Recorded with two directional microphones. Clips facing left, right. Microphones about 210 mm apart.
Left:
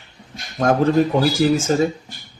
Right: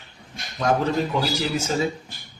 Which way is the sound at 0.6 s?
50° left (ahead or behind).